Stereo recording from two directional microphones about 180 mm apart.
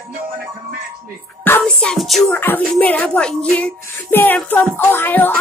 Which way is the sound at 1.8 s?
Centre (ahead or behind).